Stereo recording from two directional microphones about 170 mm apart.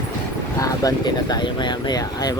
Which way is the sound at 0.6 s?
20° left (ahead or behind).